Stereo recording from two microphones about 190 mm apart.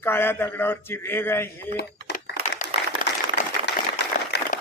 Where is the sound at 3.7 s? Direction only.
65° left (ahead or behind).